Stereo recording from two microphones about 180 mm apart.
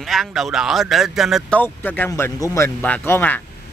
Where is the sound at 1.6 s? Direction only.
10° left (ahead or behind).